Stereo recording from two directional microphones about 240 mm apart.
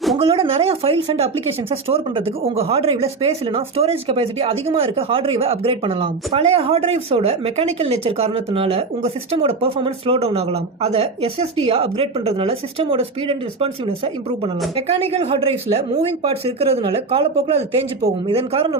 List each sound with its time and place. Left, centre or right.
0.2 s speech: right